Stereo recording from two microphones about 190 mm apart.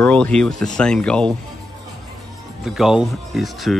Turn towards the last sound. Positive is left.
turn(degrees=0)  # may be behind; listen again after turning